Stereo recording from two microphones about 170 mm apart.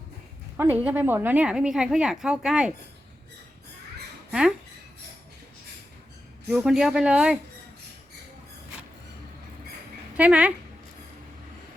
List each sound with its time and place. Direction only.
0.5 s a woman's voice: 10° right (ahead or behind)
4.3 s speech: 5° right (ahead or behind)
6.5 s a woman's voice: 5° right (ahead or behind)
10.2 s speech: 10° right (ahead or behind)